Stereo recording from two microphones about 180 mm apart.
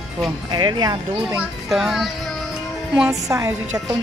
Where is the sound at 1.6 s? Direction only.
Centre (ahead or behind).